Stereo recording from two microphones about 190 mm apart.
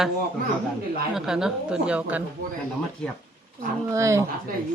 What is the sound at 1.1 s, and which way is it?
Speech, 5° right (ahead or behind).